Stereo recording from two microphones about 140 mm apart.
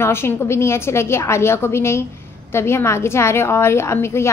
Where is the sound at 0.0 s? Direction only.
15° left (ahead or behind).